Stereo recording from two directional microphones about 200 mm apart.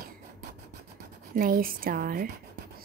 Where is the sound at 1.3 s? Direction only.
45° right (ahead or behind).